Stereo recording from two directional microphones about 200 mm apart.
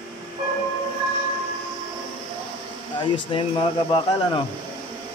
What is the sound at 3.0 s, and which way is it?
Speech, 25° left (ahead or behind).